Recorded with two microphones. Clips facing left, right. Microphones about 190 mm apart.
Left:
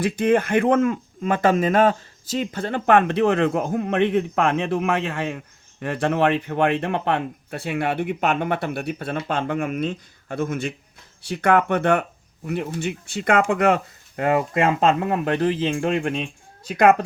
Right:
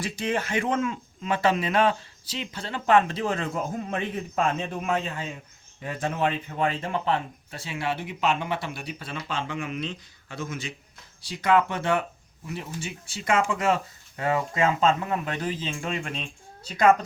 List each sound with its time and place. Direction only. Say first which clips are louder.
0.0 s speech: left 9 dB; 55° left (ahead or behind)